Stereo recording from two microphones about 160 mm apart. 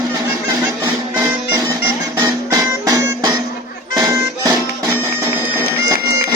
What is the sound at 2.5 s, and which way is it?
Music, 20° right (ahead or behind).